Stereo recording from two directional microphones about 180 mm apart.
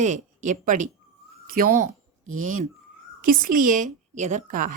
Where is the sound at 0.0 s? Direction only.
40° right (ahead or behind).